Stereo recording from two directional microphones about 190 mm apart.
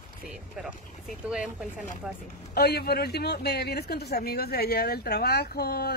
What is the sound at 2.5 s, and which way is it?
Speech, 55° left (ahead or behind).